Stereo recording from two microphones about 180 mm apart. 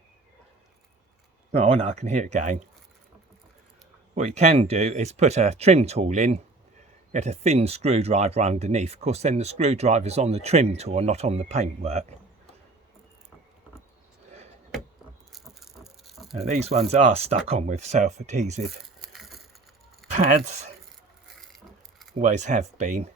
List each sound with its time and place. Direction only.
1.5 s speech: 35° right (ahead or behind)
4.1 s speech: 40° right (ahead or behind)
15.3 s rattle: centre (ahead or behind)
16.0 s a sound: centre (ahead or behind)
16.4 s speech: 35° right (ahead or behind)
18.9 s a sound: centre (ahead or behind)
20.1 s speech: 40° right (ahead or behind)
22.2 s speech: 40° right (ahead or behind)